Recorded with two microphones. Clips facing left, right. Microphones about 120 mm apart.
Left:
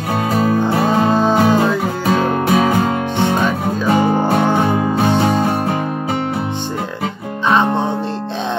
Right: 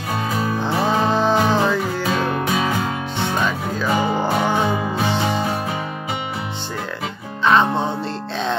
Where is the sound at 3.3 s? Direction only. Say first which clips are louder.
Left 5 dB; 20° left (ahead or behind).